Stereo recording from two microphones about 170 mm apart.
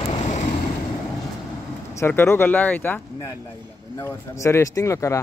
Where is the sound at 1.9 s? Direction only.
15° left (ahead or behind).